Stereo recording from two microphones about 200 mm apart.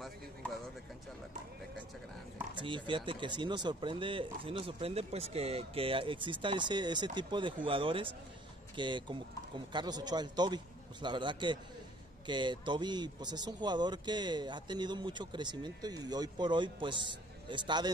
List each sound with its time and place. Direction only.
2.5 s speech: 25° right (ahead or behind)